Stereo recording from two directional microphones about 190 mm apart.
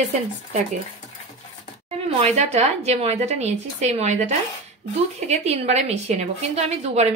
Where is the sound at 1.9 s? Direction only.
35° right (ahead or behind).